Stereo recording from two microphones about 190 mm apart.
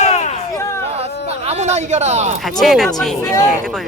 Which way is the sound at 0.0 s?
35° left (ahead or behind).